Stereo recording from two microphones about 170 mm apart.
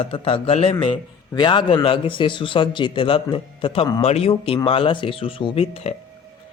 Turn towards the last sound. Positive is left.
turn(degrees=35)  # may be behind; listen again after turning